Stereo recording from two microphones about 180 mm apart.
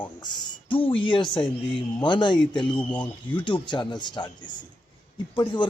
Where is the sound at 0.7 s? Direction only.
30° left (ahead or behind).